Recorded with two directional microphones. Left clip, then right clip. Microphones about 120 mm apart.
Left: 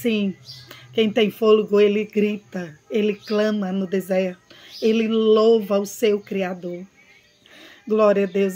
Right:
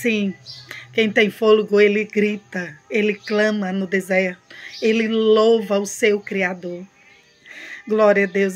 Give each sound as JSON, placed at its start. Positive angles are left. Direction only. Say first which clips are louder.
{"t": 0.0, "sound": "speech", "louder": "right 2 dB", "side_deg": 15}